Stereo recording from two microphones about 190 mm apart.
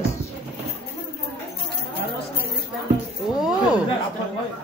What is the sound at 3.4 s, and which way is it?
Speech, 5° right (ahead or behind).